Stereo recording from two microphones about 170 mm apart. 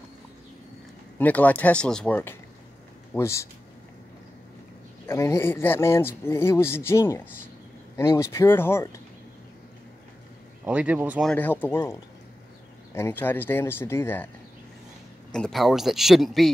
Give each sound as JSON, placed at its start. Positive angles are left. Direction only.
{"t": 1.1, "sound": "speech", "side_deg": 10}
{"t": 5.0, "sound": "speech", "side_deg": 15}
{"t": 10.6, "sound": "speech", "side_deg": -10}
{"t": 11.2, "sound": "speech", "side_deg": 10}
{"t": 15.3, "sound": "speech", "side_deg": 0}